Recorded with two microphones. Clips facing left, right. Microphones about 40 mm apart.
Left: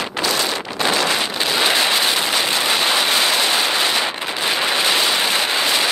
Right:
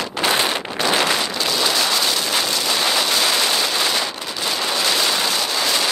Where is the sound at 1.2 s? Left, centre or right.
Left.